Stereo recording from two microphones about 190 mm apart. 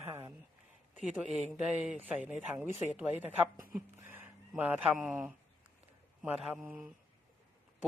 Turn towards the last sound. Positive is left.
turn(degrees=-5)  # may be behind; listen again after turning